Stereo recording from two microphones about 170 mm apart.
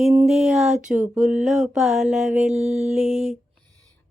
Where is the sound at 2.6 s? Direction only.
40° right (ahead or behind).